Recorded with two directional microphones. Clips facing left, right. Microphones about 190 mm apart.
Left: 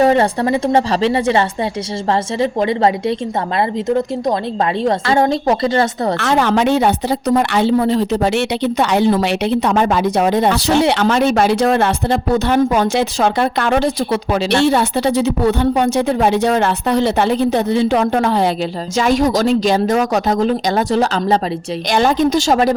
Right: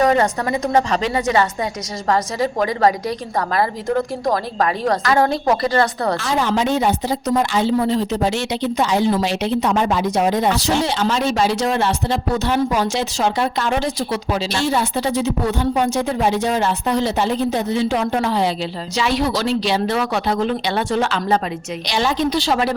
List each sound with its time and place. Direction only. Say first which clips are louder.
0.0 s a woman's voice: left 4 dB; 30° left (ahead or behind)
6.1 s a woman's voice: left 7 dB; 70° left (ahead or behind); by 21.3 s 35° left (ahead or behind)
21.8 s a woman's voice: left 5 dB; 50° left (ahead or behind)